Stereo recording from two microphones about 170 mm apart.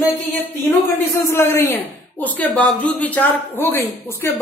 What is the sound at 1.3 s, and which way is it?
Speech, 15° left (ahead or behind).